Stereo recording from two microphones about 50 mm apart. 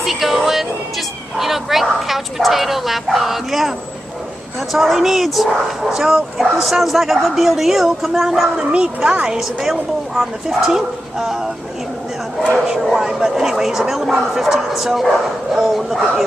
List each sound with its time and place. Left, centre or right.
0.0 s speech: centre
4.7 s speech: centre
8.5 s a woman's voice: centre
9.4 s speech: centre
12.6 s speech: centre